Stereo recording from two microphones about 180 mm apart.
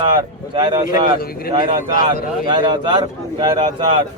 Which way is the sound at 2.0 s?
25° right (ahead or behind).